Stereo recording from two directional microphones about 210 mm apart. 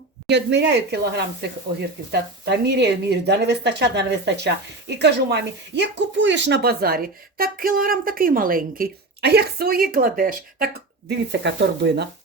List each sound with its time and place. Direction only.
0.3 s speech: 55° right (ahead or behind)
11.3 s speech: 55° right (ahead or behind)